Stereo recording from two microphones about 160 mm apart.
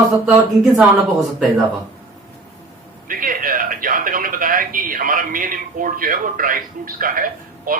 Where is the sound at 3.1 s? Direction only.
60° right (ahead or behind).